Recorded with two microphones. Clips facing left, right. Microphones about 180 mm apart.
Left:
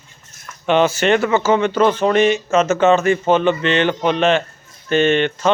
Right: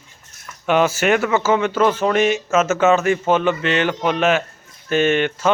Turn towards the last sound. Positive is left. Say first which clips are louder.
# left 2 dB
turn(degrees=-10)  # may be behind; listen again after turning